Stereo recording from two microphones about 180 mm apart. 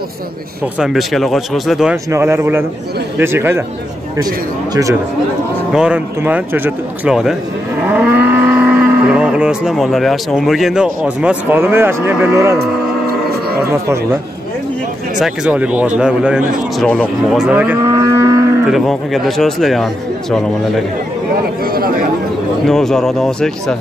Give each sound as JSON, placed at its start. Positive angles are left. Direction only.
{"t": 0.7, "sound": "a man's voice", "side_deg": 0}
{"t": 2.0, "sound": "speech", "side_deg": -15}
{"t": 5.7, "sound": "a man's voice", "side_deg": -5}
{"t": 7.8, "sound": "livestock", "side_deg": -10}
{"t": 15.1, "sound": "a man's voice", "side_deg": -5}
{"t": 16.8, "sound": "a man's voice", "side_deg": 5}
{"t": 17.8, "sound": "livestock", "side_deg": -20}
{"t": 18.7, "sound": "a man's voice", "side_deg": 0}
{"t": 21.6, "sound": "chatter", "side_deg": -55}
{"t": 22.7, "sound": "a man's voice", "side_deg": 0}